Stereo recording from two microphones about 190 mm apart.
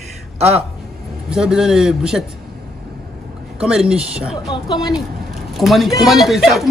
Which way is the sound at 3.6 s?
5° right (ahead or behind).